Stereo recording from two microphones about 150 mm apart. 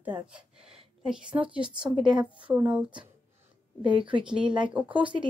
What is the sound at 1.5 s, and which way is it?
Speech, 5° right (ahead or behind).